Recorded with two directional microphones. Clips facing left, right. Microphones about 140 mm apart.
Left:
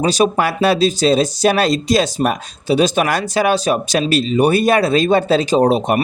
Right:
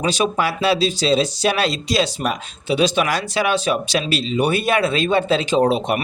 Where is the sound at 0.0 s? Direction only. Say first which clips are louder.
Left 4 dB; 40° left (ahead or behind).